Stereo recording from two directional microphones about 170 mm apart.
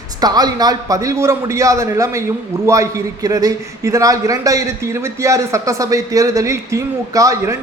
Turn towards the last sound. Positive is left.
turn(degrees=-20)  # may be behind; listen again after turning